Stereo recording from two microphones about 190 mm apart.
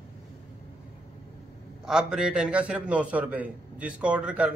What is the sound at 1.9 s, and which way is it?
A man's voice, 5° right (ahead or behind).